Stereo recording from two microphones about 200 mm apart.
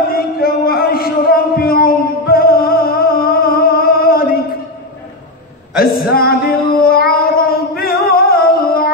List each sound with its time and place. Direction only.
0.1 s music: 50° left (ahead or behind)
5.8 s female singing: 50° left (ahead or behind)